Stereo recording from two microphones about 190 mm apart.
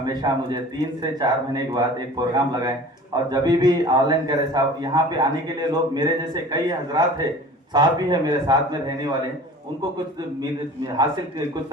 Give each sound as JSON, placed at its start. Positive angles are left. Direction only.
{"t": 0.0, "sound": "a man's voice", "side_deg": -20}